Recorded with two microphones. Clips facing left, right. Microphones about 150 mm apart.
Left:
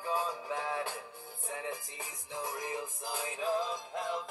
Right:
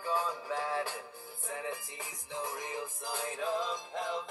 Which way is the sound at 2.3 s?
25° right (ahead or behind).